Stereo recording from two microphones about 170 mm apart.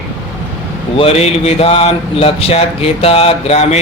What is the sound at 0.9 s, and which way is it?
Speech, 35° left (ahead or behind).